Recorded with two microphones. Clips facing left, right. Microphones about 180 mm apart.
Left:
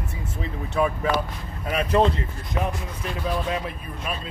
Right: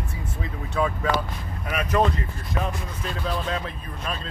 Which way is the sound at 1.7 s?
30° left (ahead or behind).